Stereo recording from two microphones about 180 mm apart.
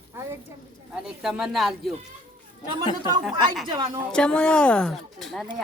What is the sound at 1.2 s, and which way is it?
Speech, 5° right (ahead or behind).